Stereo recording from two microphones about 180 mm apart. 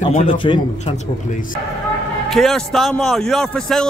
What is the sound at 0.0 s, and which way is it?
Speech, 45° left (ahead or behind).